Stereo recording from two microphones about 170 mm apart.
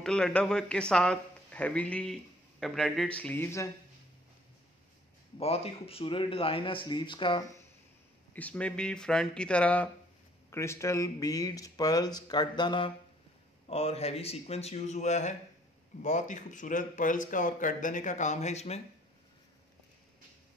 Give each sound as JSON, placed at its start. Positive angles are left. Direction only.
{"t": 0.0, "sound": "a man's voice", "side_deg": 5}
{"t": 5.4, "sound": "a man's voice", "side_deg": 35}
{"t": 8.3, "sound": "a man's voice", "side_deg": 10}